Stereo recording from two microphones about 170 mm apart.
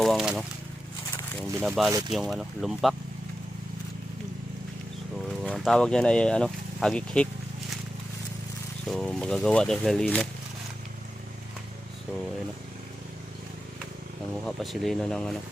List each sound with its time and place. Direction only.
0.0 s a sound: centre (ahead or behind)
1.6 s speech: centre (ahead or behind)
1.9 s speech: 20° right (ahead or behind)
2.1 s speech: centre (ahead or behind)
5.4 s speech: centre (ahead or behind)
8.9 s speech: 5° left (ahead or behind)
14.4 s speech: centre (ahead or behind)